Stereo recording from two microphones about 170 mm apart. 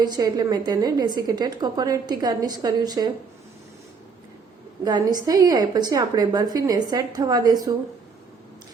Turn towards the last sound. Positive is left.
turn(degrees=-25)  # may be behind; listen again after turning